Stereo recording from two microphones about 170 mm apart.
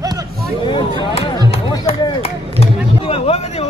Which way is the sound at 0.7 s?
30° left (ahead or behind).